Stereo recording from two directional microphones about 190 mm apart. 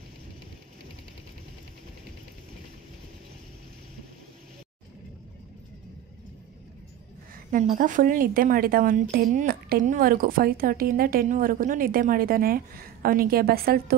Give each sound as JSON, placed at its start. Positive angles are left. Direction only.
{"t": 7.5, "sound": "a woman's voice", "side_deg": -45}